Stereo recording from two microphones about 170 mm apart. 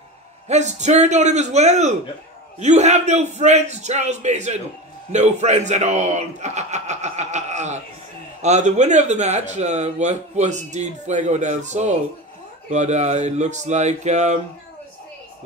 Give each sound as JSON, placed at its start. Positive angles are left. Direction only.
{"t": 0.5, "sound": "a man's voice", "side_deg": -45}